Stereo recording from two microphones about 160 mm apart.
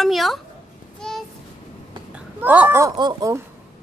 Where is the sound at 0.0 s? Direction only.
Centre (ahead or behind).